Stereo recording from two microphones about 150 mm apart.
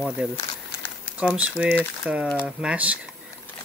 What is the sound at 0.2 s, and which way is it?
Speech, 5° right (ahead or behind).